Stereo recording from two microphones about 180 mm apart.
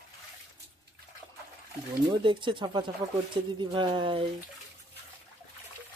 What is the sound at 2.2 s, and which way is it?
Speech, 25° right (ahead or behind).